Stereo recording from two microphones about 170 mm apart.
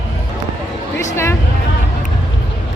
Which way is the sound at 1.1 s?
15° left (ahead or behind).